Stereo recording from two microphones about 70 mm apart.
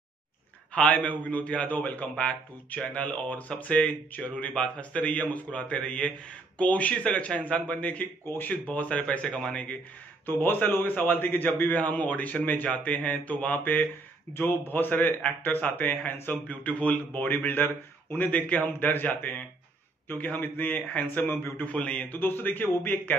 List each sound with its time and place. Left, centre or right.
0.7 s a man's voice: centre
10.2 s a man's voice: left
21.7 s a man's voice: centre